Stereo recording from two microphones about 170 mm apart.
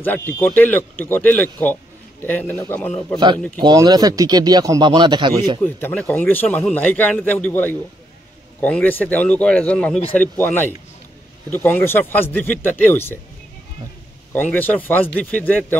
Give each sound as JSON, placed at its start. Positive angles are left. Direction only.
{"t": 0.0, "sound": "a man's voice", "side_deg": 10}
{"t": 3.5, "sound": "speech", "side_deg": -25}
{"t": 5.6, "sound": "a man's voice", "side_deg": 10}
{"t": 14.3, "sound": "a man's voice", "side_deg": 10}